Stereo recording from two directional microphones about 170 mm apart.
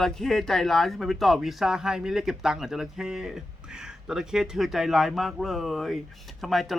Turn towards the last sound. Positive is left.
turn(degrees=0)  # may be behind; listen again after turning